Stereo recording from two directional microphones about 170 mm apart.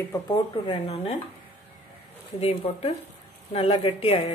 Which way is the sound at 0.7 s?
35° left (ahead or behind).